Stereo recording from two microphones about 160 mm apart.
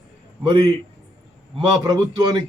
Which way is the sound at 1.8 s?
20° right (ahead or behind).